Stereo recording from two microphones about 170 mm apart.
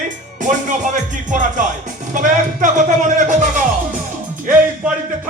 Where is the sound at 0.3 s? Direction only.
45° right (ahead or behind).